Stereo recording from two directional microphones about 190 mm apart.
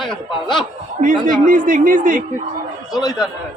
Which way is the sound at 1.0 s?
45° right (ahead or behind).